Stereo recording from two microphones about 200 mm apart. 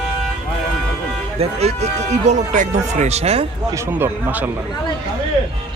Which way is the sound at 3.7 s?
10° right (ahead or behind).